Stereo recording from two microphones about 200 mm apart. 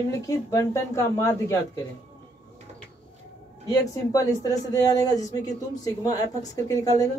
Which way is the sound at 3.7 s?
15° left (ahead or behind).